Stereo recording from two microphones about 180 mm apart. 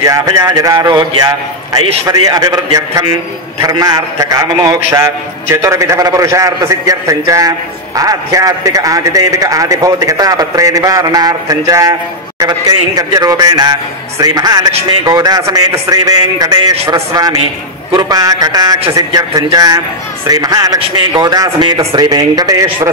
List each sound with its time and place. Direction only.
0.0 s a man's voice: 20° right (ahead or behind)